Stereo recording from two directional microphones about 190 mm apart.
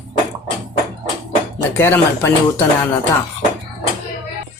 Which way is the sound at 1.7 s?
15° left (ahead or behind).